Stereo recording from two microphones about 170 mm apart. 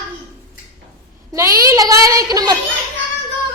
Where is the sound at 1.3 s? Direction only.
20° right (ahead or behind).